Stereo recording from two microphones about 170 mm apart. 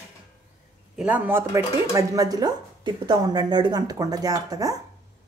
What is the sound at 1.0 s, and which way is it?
Speech, 10° right (ahead or behind).